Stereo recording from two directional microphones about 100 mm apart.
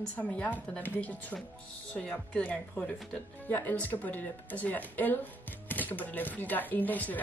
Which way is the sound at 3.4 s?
20° left (ahead or behind).